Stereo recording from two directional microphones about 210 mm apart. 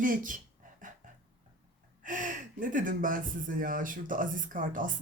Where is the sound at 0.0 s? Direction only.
40° right (ahead or behind).